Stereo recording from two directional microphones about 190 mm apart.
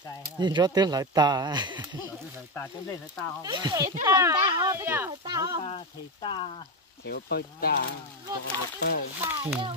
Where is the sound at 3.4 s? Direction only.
20° right (ahead or behind).